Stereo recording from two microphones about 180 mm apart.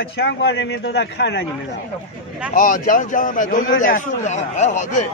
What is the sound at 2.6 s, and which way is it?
A man's voice, 50° left (ahead or behind).